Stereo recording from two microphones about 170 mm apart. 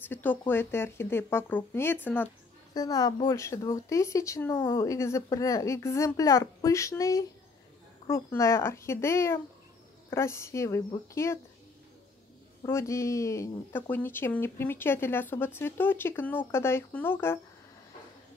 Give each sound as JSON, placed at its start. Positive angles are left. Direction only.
{"t": 0.0, "sound": "speech", "side_deg": 10}
{"t": 2.7, "sound": "speech", "side_deg": 20}
{"t": 12.6, "sound": "speech", "side_deg": 15}